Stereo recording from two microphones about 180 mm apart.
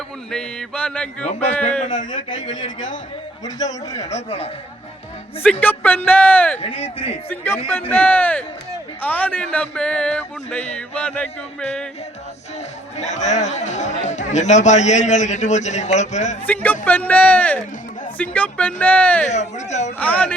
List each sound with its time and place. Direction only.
0.3 s a sound: 5° left (ahead or behind)
1.4 s speech: 10° left (ahead or behind)
2.0 s a man's voice: 25° left (ahead or behind)
2.6 s a man's voice: 45° left (ahead or behind)
5.4 s speech: 10° left (ahead or behind)
6.6 s speech: 35° left (ahead or behind)
7.3 s speech: 15° left (ahead or behind)
13.0 s speech: 40° left (ahead or behind)
16.8 s speech: 10° left (ahead or behind)
19.3 s speech: 40° left (ahead or behind)
20.0 s speech: 10° left (ahead or behind)